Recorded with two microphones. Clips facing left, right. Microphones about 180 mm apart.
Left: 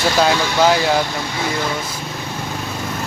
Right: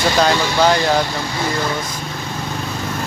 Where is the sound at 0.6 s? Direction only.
5° left (ahead or behind).